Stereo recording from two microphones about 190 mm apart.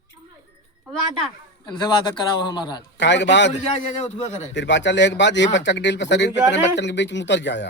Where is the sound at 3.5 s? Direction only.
40° left (ahead or behind).